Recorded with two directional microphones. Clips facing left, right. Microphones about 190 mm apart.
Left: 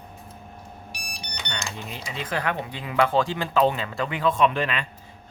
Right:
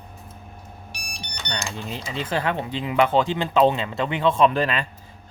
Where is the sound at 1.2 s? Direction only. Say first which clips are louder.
Right 3 dB; 35° right (ahead or behind).